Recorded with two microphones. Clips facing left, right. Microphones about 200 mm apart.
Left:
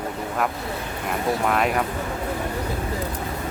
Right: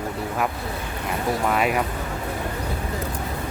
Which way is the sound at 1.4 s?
5° right (ahead or behind).